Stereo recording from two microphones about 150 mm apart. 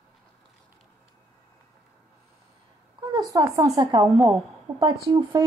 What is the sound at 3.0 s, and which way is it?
Speech, 25° right (ahead or behind).